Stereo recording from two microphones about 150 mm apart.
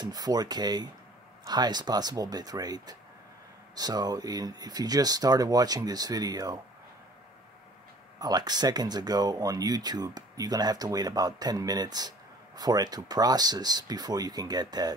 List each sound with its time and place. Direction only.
0.0 s speech: 25° right (ahead or behind)
8.2 s speech: 25° right (ahead or behind)